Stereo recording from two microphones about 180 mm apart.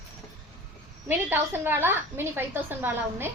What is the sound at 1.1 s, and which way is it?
A woman's voice, 10° right (ahead or behind).